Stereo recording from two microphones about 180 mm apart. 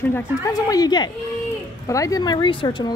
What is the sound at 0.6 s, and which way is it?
Speech, 20° left (ahead or behind).